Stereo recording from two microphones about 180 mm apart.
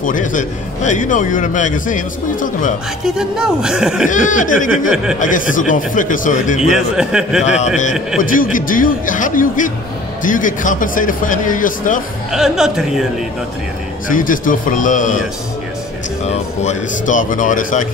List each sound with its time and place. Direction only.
0.0 s a man's voice: 45° left (ahead or behind)
3.2 s speech: 5° right (ahead or behind)
4.1 s a man's voice: 45° left (ahead or behind)
6.6 s speech: 5° right (ahead or behind)
7.4 s a man's voice: 40° left (ahead or behind)
12.3 s speech: 5° right (ahead or behind)
14.0 s a man's voice: 50° left (ahead or behind)
16.3 s a man's voice: 45° left (ahead or behind)